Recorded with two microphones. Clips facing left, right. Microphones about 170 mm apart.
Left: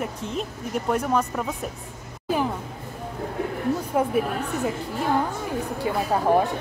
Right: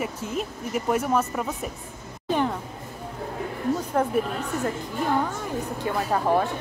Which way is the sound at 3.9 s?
10° left (ahead or behind).